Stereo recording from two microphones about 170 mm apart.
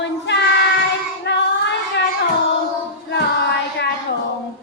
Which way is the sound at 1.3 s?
90° left.